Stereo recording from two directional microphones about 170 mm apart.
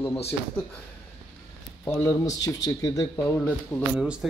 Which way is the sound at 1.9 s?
15° left (ahead or behind).